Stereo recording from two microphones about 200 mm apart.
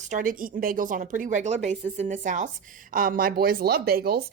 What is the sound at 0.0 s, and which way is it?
A woman's voice, 40° right (ahead or behind).